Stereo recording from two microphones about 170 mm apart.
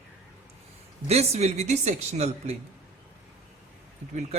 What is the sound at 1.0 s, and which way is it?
Speech, 40° right (ahead or behind).